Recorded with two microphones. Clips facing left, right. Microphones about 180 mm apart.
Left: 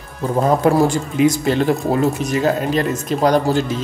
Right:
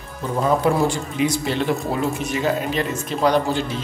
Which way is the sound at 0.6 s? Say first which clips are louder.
Left 4 dB; 45° left (ahead or behind).